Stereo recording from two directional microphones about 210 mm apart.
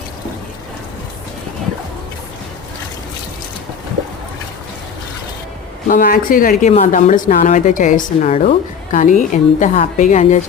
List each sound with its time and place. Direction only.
5.9 s a woman's voice: 40° left (ahead or behind)